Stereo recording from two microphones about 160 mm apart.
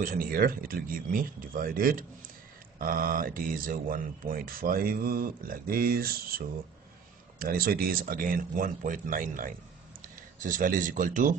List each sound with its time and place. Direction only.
0.0 s speech: 60° right (ahead or behind)